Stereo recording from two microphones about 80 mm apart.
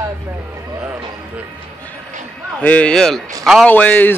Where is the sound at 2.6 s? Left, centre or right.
Centre.